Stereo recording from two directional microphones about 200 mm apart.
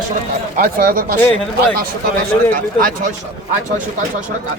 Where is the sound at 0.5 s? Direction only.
45° right (ahead or behind).